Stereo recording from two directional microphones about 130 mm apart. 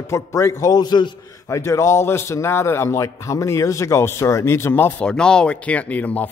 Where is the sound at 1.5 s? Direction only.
20° left (ahead or behind).